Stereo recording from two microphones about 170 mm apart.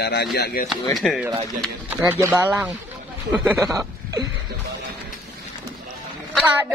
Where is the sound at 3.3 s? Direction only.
15° right (ahead or behind).